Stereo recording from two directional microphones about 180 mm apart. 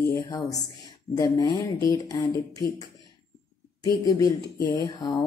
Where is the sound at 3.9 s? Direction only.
20° left (ahead or behind).